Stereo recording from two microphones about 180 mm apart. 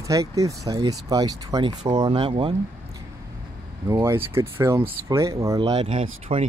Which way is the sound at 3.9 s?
15° right (ahead or behind).